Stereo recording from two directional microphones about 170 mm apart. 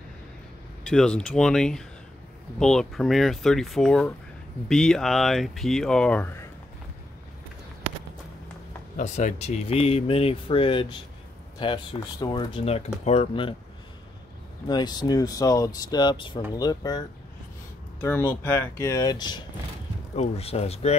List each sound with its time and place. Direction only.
0.8 s speech: 5° left (ahead or behind)
8.9 s speech: 45° left (ahead or behind)
14.7 s speech: 25° left (ahead or behind)
18.0 s speech: 15° left (ahead or behind)
20.2 s speech: 35° left (ahead or behind)